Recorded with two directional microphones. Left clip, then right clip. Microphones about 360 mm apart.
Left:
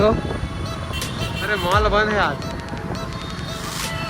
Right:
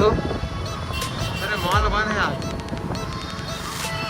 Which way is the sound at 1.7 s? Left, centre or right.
Centre.